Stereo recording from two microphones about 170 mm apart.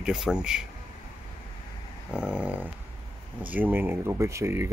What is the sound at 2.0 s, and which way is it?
Speech, 5° right (ahead or behind).